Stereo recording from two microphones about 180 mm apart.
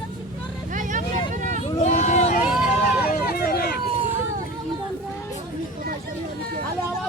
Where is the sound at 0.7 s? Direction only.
45° right (ahead or behind).